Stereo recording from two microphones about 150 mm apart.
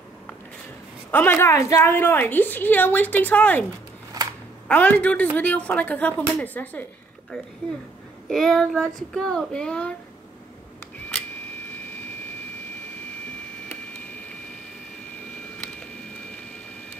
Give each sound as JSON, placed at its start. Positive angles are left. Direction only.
{"t": 1.1, "sound": "a woman's voice", "side_deg": 15}
{"t": 4.2, "sound": "camera", "side_deg": -25}
{"t": 4.6, "sound": "a woman's voice", "side_deg": 10}
{"t": 8.3, "sound": "child singing", "side_deg": 0}
{"t": 15.5, "sound": "a sound", "side_deg": 5}